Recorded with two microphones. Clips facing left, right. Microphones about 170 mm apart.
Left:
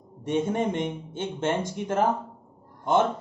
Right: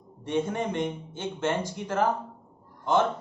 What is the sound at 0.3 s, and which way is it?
Speech, 20° left (ahead or behind).